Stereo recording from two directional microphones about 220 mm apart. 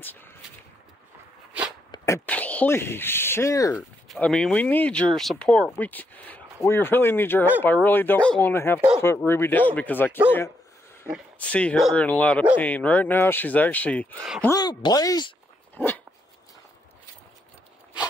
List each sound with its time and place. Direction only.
1.9 s speech: 15° left (ahead or behind)
4.1 s speech: 5° left (ahead or behind)
14.4 s speech: 15° left (ahead or behind)
15.7 s dog: 10° left (ahead or behind)